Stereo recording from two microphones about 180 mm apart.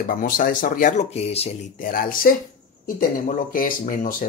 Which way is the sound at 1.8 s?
55° left (ahead or behind).